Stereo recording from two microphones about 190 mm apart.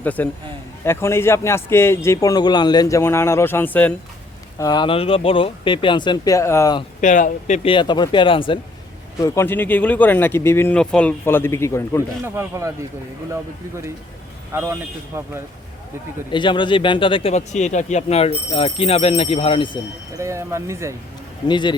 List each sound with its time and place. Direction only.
0.0 s a man's voice: 10° left (ahead or behind)
4.6 s speech: 20° left (ahead or behind)
7.0 s speech: 40° left (ahead or behind)
9.2 s a man's voice: 15° left (ahead or behind)
12.2 s speech: 10° right (ahead or behind)
14.5 s speech: 15° right (ahead or behind)
16.3 s speech: 25° left (ahead or behind)
20.1 s speech: 15° right (ahead or behind)
21.4 s speech: 25° left (ahead or behind)